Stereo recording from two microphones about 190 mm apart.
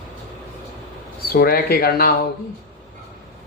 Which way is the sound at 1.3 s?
50° left (ahead or behind).